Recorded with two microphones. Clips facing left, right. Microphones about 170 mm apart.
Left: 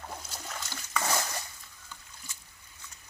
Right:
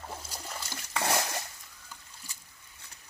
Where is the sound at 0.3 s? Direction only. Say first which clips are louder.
Even; 10° right (ahead or behind).